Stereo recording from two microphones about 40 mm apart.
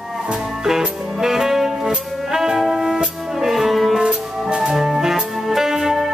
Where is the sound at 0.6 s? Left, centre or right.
Centre.